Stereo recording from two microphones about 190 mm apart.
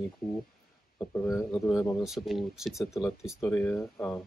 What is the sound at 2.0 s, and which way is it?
Speech, centre (ahead or behind).